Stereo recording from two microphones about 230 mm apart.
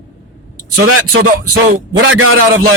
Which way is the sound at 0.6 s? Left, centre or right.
Right.